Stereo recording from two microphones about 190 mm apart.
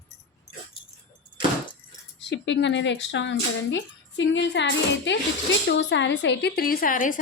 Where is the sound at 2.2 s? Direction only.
70° left (ahead or behind).